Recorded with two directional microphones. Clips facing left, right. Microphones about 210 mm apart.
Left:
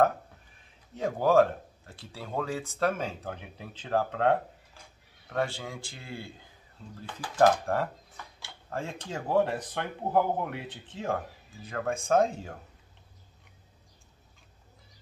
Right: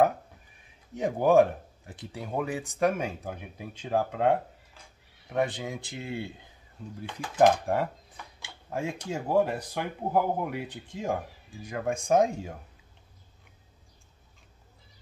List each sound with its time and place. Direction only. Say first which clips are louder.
0.9 s speech: right 2 dB; 15° right (ahead or behind)